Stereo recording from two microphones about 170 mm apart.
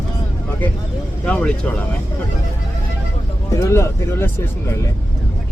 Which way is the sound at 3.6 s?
15° left (ahead or behind).